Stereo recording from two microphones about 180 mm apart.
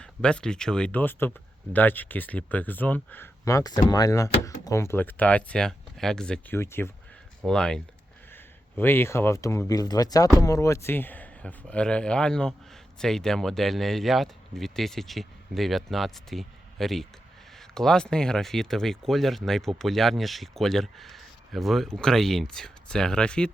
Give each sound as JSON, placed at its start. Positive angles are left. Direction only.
{"t": 0.0, "sound": "speech", "side_deg": 5}
{"t": 7.4, "sound": "speech", "side_deg": 5}